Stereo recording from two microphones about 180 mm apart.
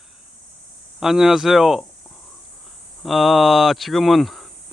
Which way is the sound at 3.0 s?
Centre (ahead or behind).